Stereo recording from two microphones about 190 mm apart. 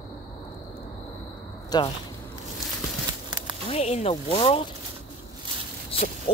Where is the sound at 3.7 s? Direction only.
35° left (ahead or behind).